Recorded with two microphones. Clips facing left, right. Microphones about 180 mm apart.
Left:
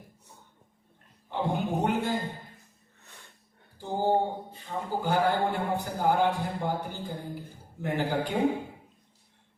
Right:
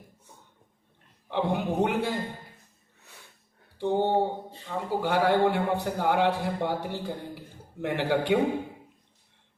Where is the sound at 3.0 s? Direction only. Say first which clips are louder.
Right 1 dB; 10° right (ahead or behind).